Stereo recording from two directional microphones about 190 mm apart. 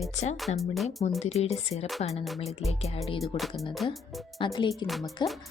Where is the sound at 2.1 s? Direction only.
Centre (ahead or behind).